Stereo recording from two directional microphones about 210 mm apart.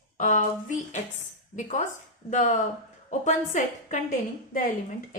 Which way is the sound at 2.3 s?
35° left (ahead or behind).